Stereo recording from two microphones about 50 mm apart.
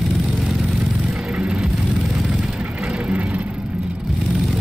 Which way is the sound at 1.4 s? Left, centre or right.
Centre.